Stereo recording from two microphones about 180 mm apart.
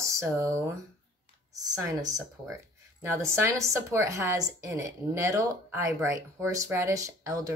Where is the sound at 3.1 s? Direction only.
15° right (ahead or behind).